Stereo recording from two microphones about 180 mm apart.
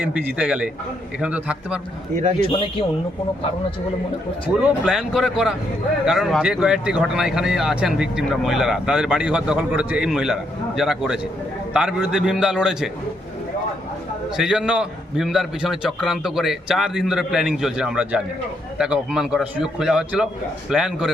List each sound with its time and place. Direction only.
0.0 s a man's voice: 10° right (ahead or behind)
2.4 s a man's voice: 30° left (ahead or behind)
4.6 s speech: 5° right (ahead or behind)
14.3 s speech: 5° right (ahead or behind)